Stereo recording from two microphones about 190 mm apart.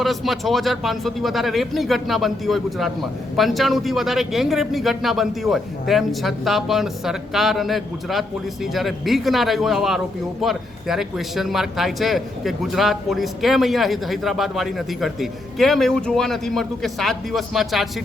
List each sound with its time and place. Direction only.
0.0 s speech: centre (ahead or behind)